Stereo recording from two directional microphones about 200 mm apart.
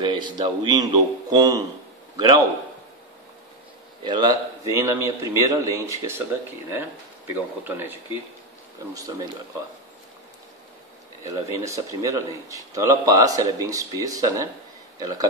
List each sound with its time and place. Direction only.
0.0 s a man's voice: 20° right (ahead or behind)
4.0 s speech: 20° right (ahead or behind)
11.2 s speech: 15° right (ahead or behind)